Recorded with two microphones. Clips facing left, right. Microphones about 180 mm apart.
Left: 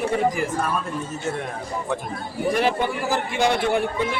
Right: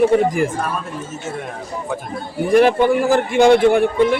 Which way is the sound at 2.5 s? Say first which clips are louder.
Right 10 dB; 55° right (ahead or behind).